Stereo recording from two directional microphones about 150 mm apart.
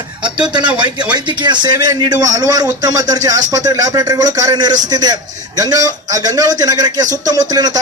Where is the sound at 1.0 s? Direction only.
30° right (ahead or behind).